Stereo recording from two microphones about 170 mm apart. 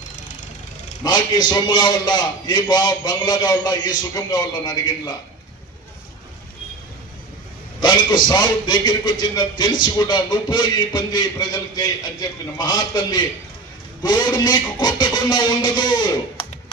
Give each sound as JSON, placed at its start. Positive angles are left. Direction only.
{"t": 1.0, "sound": "a man's voice", "side_deg": 25}
{"t": 7.8, "sound": "a man's voice", "side_deg": 25}